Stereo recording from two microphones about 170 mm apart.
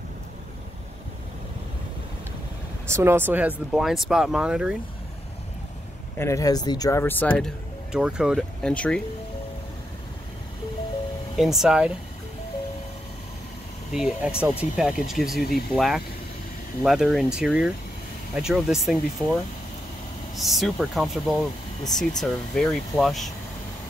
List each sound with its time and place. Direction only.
2.9 s speech: 15° right (ahead or behind)
6.1 s speech: 15° left (ahead or behind)
7.9 s speech: 5° right (ahead or behind)
11.3 s speech: centre (ahead or behind)
13.9 s speech: 5° right (ahead or behind)
20.3 s speech: centre (ahead or behind)